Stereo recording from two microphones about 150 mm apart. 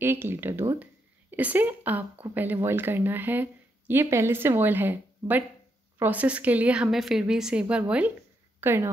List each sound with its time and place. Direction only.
0.0 s speech: 15° right (ahead or behind)